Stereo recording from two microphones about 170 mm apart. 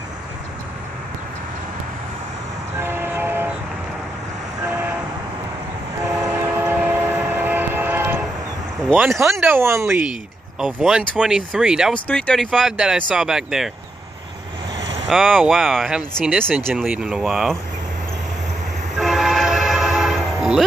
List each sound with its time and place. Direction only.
2.8 s train: 15° right (ahead or behind)
4.6 s train: 10° right (ahead or behind)
6.6 s train: 10° right (ahead or behind)
8.9 s speech: 10° right (ahead or behind)
11.9 s speech: 5° left (ahead or behind)
15.0 s speech: centre (ahead or behind)
16.2 s speech: 10° right (ahead or behind)
18.9 s train horn: centre (ahead or behind)